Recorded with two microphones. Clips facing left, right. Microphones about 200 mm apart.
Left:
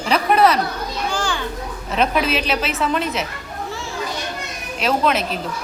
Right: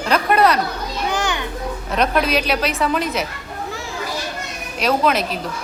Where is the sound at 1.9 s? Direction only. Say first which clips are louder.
Right 1 dB; 5° left (ahead or behind).